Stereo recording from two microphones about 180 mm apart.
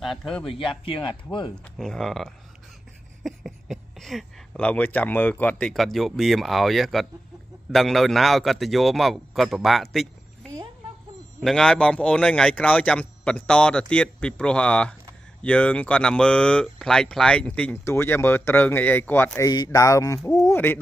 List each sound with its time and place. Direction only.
0.0 s speech: centre (ahead or behind)
0.5 s speech: 30° left (ahead or behind)
1.5 s speech: centre (ahead or behind)